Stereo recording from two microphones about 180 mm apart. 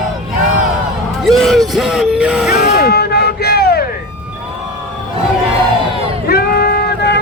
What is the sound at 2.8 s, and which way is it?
Music, 65° left (ahead or behind).